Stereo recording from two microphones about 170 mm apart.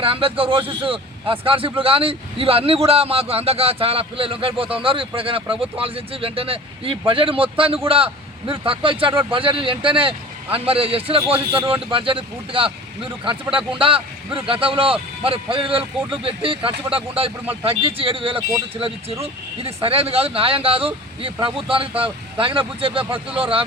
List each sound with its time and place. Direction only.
0.0 s a man's voice: 35° right (ahead or behind)